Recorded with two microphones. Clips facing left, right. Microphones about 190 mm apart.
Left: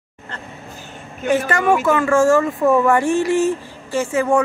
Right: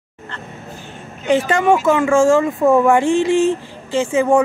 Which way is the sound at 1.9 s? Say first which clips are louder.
Right 1 dB; 15° right (ahead or behind).